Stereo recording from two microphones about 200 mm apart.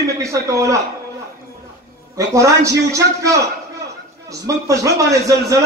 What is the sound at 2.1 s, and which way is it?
A man's voice, 15° right (ahead or behind).